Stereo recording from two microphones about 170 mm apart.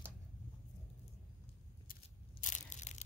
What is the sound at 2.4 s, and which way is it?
Crushing, 45° left (ahead or behind).